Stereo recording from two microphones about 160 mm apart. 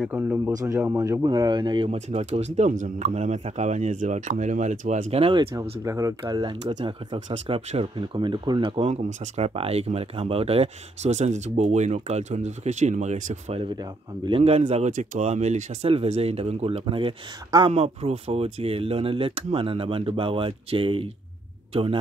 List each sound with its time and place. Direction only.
0.0 s speech: 10° right (ahead or behind)
0.5 s speech: 25° right (ahead or behind)
1.9 s speech: 45° right (ahead or behind)
5.2 s speech: 35° right (ahead or behind)
5.6 s speech: 20° right (ahead or behind)
6.6 s speech: 45° right (ahead or behind)
13.7 s speech: 30° right (ahead or behind)
14.7 s speech: 45° right (ahead or behind)